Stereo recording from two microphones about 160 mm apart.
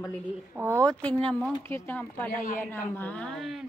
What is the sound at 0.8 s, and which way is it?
A woman's voice, 5° left (ahead or behind).